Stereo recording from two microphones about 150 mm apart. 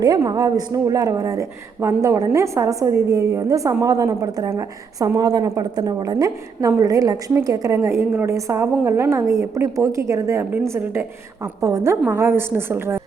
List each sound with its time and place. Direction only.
0.0 s a woman's voice: 25° right (ahead or behind)